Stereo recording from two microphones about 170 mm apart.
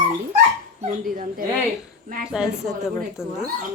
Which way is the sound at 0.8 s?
50° right (ahead or behind).